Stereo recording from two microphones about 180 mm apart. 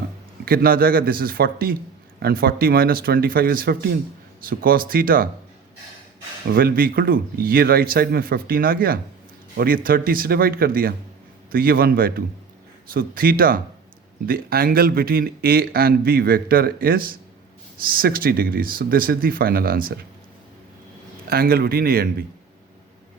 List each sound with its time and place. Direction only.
0.4 s speech: 55° right (ahead or behind)
6.5 s speech: 55° right (ahead or behind)
21.2 s speech: 55° right (ahead or behind)